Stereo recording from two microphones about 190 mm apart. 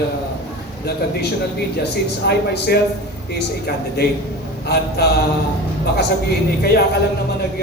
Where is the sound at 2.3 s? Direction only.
60° left (ahead or behind).